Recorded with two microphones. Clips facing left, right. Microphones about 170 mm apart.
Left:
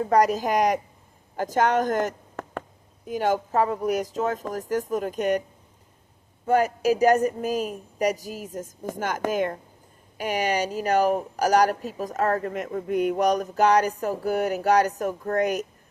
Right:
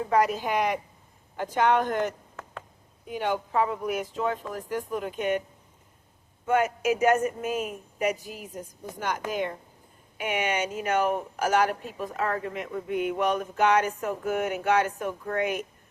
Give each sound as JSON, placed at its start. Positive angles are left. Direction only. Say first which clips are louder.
{"t": 0.1, "sound": "speech", "louder": "left 3 dB", "side_deg": 40}
{"t": 6.4, "sound": "speech", "louder": "left 3 dB", "side_deg": 35}